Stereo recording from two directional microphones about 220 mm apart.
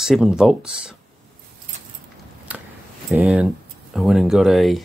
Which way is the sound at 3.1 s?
5° right (ahead or behind).